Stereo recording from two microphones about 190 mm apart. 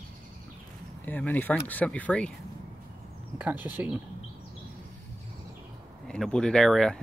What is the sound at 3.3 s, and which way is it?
Speech, 10° right (ahead or behind).